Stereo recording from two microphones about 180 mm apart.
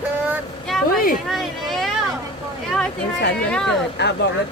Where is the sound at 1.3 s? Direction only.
Centre (ahead or behind).